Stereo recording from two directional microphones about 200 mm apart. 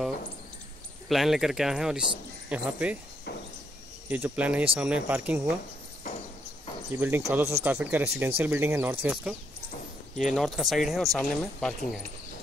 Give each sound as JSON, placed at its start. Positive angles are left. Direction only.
{"t": 1.0, "sound": "speech", "side_deg": 0}
{"t": 3.3, "sound": "a sound", "side_deg": 55}
{"t": 4.1, "sound": "speech", "side_deg": -10}
{"t": 7.0, "sound": "speech", "side_deg": -10}